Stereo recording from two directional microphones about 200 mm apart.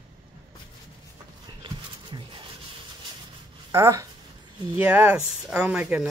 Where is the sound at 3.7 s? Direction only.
15° right (ahead or behind).